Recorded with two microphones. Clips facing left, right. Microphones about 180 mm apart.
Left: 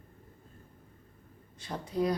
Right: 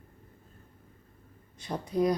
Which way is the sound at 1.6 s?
20° right (ahead or behind).